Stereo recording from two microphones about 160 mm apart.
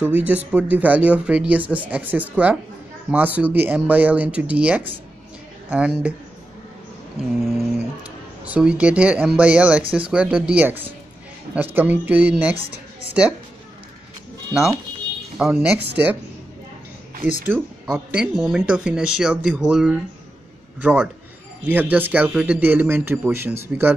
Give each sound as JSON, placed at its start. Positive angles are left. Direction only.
{"t": 0.0, "sound": "speech", "side_deg": -10}
{"t": 8.5, "sound": "speech", "side_deg": -5}
{"t": 14.5, "sound": "speech", "side_deg": -5}
{"t": 17.5, "sound": "speech", "side_deg": -15}
{"t": 18.1, "sound": "speech", "side_deg": -5}